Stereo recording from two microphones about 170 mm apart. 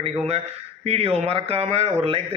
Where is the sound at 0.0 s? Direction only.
35° right (ahead or behind).